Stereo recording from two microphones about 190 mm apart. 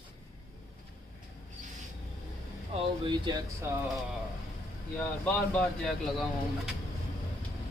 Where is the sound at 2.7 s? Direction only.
25° right (ahead or behind).